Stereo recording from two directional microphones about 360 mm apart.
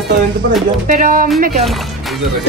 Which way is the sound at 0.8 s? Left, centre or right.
Right.